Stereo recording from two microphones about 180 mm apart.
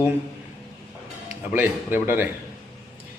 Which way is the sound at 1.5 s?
10° right (ahead or behind).